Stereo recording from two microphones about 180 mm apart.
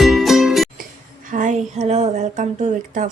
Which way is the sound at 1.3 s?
40° right (ahead or behind).